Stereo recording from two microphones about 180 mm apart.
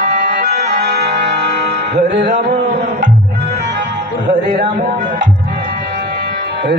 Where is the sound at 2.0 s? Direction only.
70° right (ahead or behind).